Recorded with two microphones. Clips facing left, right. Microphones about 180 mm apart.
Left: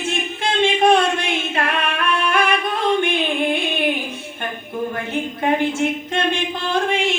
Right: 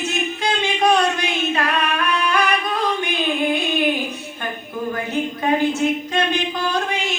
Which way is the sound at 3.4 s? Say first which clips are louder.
Right 1 dB; 25° left (ahead or behind).